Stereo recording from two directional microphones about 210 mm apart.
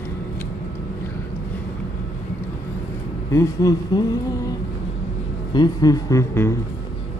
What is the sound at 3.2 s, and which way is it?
Speech, 15° left (ahead or behind).